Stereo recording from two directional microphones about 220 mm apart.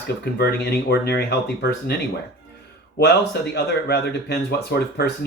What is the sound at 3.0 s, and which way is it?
Speech, 50° left (ahead or behind).